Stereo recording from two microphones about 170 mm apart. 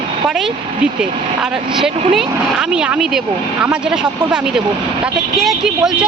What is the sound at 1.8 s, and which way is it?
Speech, 35° right (ahead or behind).